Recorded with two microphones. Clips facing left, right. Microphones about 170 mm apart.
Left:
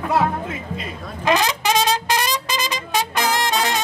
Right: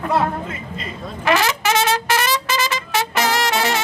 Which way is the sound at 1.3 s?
15° left (ahead or behind).